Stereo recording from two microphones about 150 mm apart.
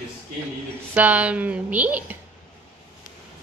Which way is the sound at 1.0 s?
10° right (ahead or behind).